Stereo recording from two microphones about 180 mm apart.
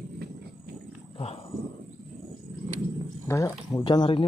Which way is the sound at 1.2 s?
35° left (ahead or behind).